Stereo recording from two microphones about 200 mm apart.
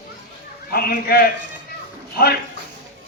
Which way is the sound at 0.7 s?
50° left (ahead or behind).